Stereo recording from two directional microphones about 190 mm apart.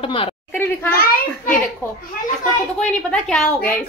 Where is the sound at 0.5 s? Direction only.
10° left (ahead or behind).